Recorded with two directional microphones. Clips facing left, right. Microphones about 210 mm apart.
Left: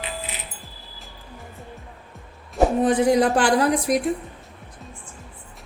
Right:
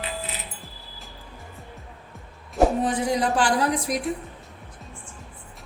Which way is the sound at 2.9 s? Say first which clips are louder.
Left 6 dB; 55° left (ahead or behind).